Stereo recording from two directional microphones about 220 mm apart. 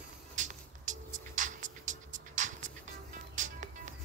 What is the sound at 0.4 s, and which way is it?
Music, 35° right (ahead or behind).